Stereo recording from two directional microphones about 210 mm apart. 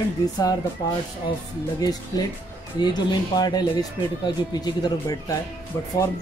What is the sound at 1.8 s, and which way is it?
Speech, 20° left (ahead or behind).